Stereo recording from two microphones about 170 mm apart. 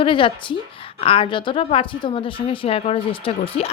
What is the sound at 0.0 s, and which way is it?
A woman's voice, 30° left (ahead or behind).